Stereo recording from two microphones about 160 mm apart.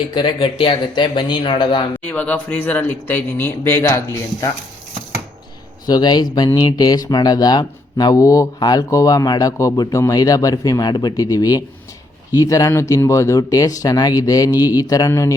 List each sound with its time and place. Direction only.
0.1 s speech: 30° left (ahead or behind)
2.0 s speech: 10° left (ahead or behind)
5.8 s speech: 25° left (ahead or behind)